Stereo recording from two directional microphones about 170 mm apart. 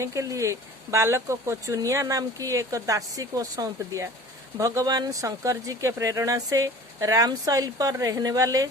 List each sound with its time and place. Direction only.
0.0 s speech: 20° right (ahead or behind)